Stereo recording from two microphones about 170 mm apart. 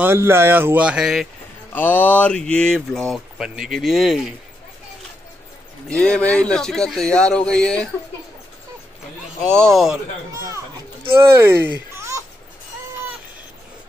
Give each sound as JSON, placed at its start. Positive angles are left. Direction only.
{"t": 0.0, "sound": "speech", "side_deg": -15}
{"t": 1.7, "sound": "speech", "side_deg": 10}
{"t": 5.9, "sound": "speech", "side_deg": 5}
{"t": 9.4, "sound": "speech", "side_deg": 0}
{"t": 10.3, "sound": "speech", "side_deg": -15}